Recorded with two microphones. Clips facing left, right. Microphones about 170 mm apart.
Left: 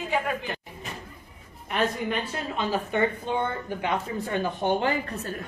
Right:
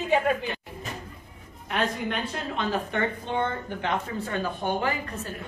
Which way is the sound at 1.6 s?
Centre (ahead or behind).